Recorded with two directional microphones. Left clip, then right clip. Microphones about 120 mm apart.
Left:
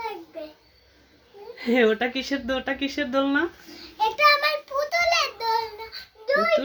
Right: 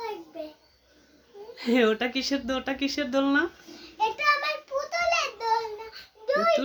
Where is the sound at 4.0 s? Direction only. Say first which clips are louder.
Left 5 dB; 20° left (ahead or behind).